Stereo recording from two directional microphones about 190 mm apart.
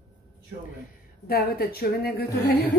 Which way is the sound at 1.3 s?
50° left (ahead or behind).